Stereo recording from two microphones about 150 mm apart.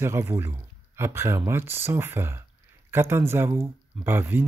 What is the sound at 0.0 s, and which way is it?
Speech, 15° right (ahead or behind).